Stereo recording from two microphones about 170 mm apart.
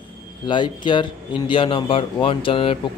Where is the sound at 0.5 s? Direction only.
25° left (ahead or behind).